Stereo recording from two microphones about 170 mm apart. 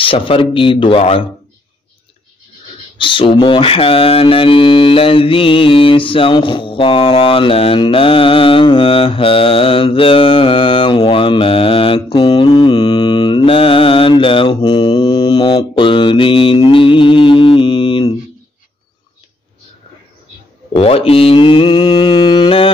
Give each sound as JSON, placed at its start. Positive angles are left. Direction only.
{"t": 0.0, "sound": "mantra", "side_deg": 30}
{"t": 3.0, "sound": "mantra", "side_deg": 30}
{"t": 20.7, "sound": "mantra", "side_deg": 35}